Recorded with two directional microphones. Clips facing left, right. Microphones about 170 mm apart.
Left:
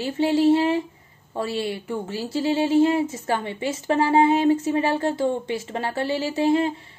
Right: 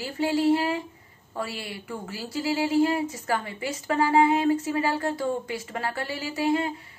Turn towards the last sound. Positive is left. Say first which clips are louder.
# left 5 dB
turn(degrees=25)  # may be behind; listen again after turning